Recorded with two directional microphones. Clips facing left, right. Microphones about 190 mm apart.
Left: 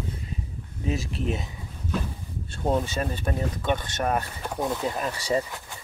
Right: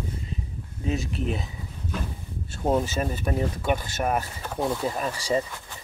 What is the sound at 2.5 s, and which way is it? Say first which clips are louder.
Speech: right 1 dB; 5° right (ahead or behind).